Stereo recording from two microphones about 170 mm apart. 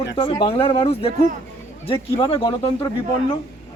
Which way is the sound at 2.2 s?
30° left (ahead or behind).